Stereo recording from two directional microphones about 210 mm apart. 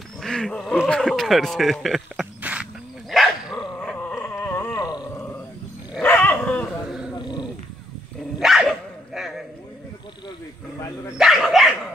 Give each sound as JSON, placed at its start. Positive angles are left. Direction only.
{"t": 0.2, "sound": "speech", "side_deg": 5}
{"t": 3.1, "sound": "dog", "side_deg": 0}
{"t": 3.8, "sound": "a sound", "side_deg": 10}
{"t": 5.9, "sound": "dog", "side_deg": 10}
{"t": 7.2, "sound": "dog", "side_deg": 20}
{"t": 8.4, "sound": "dog", "side_deg": 0}
{"t": 11.1, "sound": "dog", "side_deg": 0}